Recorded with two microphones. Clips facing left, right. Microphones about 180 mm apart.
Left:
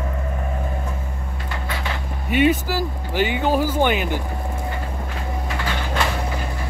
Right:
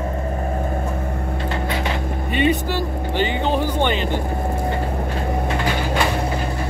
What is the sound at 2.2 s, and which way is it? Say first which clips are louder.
Vehicle: left 2 dB; 5° left (ahead or behind).